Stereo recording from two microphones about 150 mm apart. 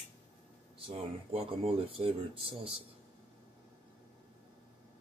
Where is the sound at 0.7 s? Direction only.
40° right (ahead or behind).